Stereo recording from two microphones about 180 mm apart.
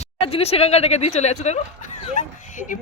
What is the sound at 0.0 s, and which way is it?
A woman's voice, 30° left (ahead or behind).